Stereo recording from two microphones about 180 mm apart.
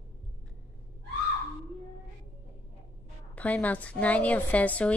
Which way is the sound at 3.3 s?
10° left (ahead or behind).